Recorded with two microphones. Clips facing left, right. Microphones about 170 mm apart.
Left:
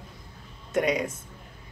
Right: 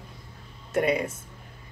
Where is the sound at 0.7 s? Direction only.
5° right (ahead or behind).